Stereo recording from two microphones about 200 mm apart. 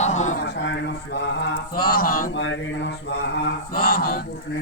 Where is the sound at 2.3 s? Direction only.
65° left (ahead or behind).